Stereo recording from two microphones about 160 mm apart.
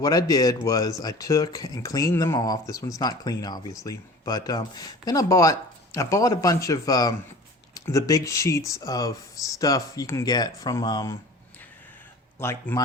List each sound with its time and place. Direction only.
0.0 s speech: 25° left (ahead or behind)
12.4 s speech: 15° left (ahead or behind)